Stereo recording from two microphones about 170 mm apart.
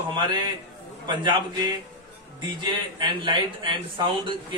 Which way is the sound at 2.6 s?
30° right (ahead or behind).